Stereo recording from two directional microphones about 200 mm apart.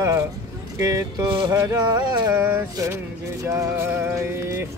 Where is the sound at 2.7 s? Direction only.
20° right (ahead or behind).